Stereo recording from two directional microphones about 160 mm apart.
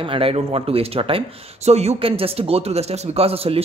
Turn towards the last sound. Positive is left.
turn(degrees=-35)  # may be behind; listen again after turning